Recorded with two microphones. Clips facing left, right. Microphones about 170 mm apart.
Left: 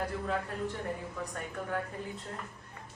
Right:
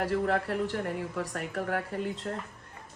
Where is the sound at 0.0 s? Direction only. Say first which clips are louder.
Right 6 dB; 85° right.